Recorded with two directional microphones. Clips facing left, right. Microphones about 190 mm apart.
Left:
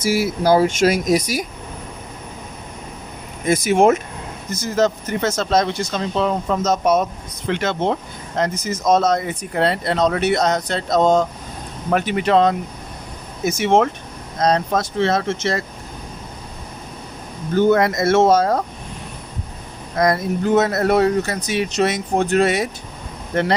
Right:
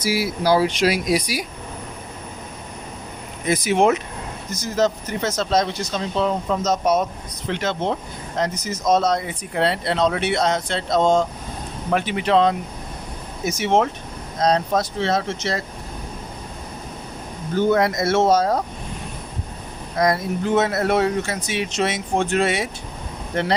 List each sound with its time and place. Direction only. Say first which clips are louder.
0.0 s speech: left 3 dB; 50° left (ahead or behind)
3.4 s speech: left 3 dB; 50° left (ahead or behind)
17.7 s speech: left 2 dB; 50° left (ahead or behind)
20.0 s speech: left 2 dB; 45° left (ahead or behind)